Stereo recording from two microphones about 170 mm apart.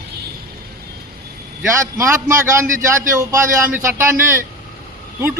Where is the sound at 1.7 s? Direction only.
15° right (ahead or behind).